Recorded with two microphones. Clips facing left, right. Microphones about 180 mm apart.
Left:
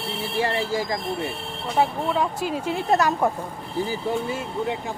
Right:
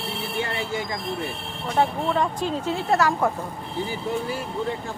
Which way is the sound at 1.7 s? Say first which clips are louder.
Even; 5° left (ahead or behind).